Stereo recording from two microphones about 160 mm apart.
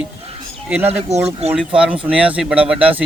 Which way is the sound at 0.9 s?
40° right (ahead or behind).